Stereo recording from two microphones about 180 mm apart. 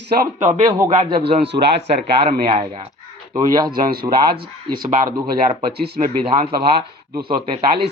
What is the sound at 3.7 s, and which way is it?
Speech, 55° right (ahead or behind).